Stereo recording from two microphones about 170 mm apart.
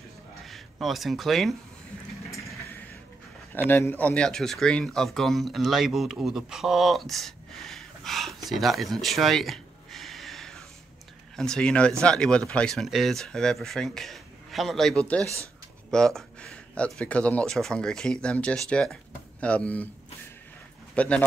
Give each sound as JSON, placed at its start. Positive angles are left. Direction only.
{"t": 0.4, "sound": "speech", "side_deg": 0}
{"t": 3.5, "sound": "speech", "side_deg": 10}
{"t": 15.2, "sound": "speech", "side_deg": -15}
{"t": 15.9, "sound": "speech", "side_deg": 5}
{"t": 20.9, "sound": "speech", "side_deg": 5}